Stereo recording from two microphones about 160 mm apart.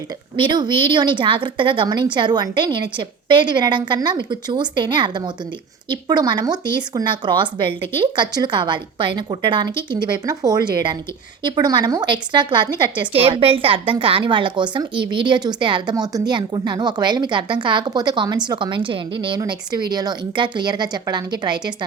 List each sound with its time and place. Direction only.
0.3 s a woman's voice: 30° right (ahead or behind)